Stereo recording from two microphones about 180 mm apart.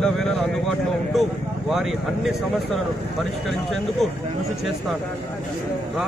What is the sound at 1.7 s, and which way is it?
Speech, centre (ahead or behind).